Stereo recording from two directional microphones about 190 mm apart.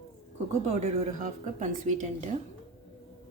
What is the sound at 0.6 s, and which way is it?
Speech, 40° right (ahead or behind).